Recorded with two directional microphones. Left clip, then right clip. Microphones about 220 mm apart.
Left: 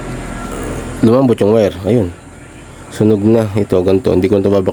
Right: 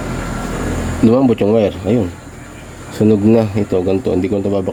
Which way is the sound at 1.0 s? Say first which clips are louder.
Left 2 dB; 25° left (ahead or behind).